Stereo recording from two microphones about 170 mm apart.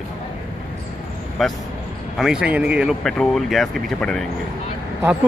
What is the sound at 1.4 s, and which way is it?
Speech, centre (ahead or behind).